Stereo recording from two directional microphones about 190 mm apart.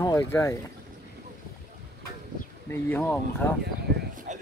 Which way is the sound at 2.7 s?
10° left (ahead or behind).